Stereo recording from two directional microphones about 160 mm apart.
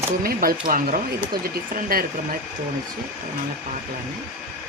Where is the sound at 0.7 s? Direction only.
60° right (ahead or behind).